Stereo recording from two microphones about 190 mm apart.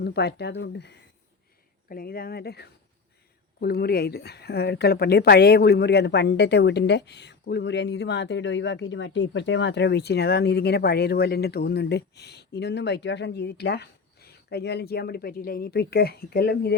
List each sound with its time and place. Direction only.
0.0 s speech: 60° left (ahead or behind)
1.9 s speech: 50° left (ahead or behind)